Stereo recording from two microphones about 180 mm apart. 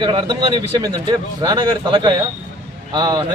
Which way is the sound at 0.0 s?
25° right (ahead or behind).